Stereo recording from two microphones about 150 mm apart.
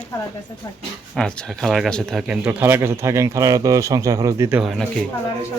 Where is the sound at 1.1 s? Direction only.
5° left (ahead or behind); by 4.6 s 15° right (ahead or behind).